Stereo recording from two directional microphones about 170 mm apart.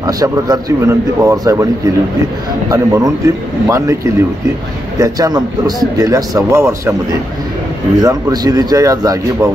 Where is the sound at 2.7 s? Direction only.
20° right (ahead or behind).